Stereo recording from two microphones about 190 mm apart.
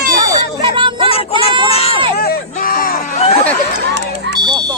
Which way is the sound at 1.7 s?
30° left (ahead or behind).